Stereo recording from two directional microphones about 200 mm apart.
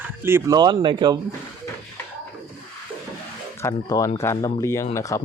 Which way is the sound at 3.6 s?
15° left (ahead or behind).